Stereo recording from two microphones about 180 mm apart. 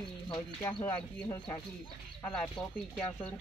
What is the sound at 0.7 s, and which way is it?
Speech, 25° left (ahead or behind).